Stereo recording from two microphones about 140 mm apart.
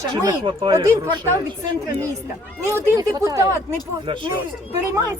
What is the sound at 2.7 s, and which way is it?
A woman's voice, 25° right (ahead or behind).